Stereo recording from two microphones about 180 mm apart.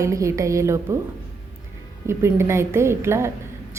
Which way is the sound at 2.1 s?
15° right (ahead or behind).